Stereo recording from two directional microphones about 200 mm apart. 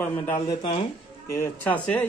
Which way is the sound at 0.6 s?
25° left (ahead or behind).